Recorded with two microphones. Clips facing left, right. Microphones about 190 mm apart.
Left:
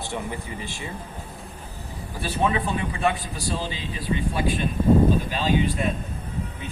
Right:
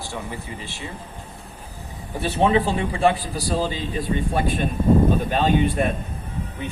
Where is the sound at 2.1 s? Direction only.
25° right (ahead or behind).